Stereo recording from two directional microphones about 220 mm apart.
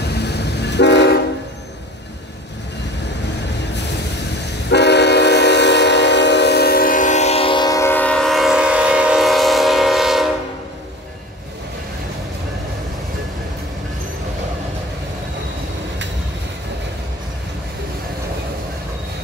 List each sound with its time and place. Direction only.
0.0 s train: 50° left (ahead or behind)
4.6 s train: 50° left (ahead or behind); by 10.3 s centre (ahead or behind)